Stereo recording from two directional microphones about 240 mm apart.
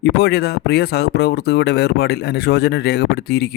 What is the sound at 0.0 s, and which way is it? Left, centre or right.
Speech, left.